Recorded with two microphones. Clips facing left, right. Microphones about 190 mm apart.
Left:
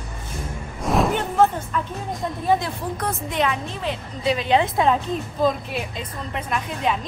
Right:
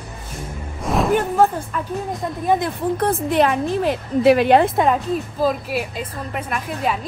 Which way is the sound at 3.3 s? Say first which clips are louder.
Right 6 dB; 45° right (ahead or behind).